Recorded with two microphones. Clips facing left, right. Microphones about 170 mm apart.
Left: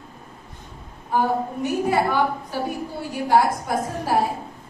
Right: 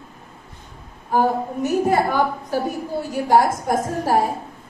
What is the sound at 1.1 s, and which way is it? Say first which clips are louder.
A woman's voice: right 2 dB; 45° right (ahead or behind).